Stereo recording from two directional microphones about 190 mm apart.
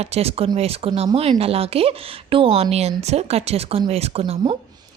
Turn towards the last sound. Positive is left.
turn(degrees=-30)  # may be behind; listen again after turning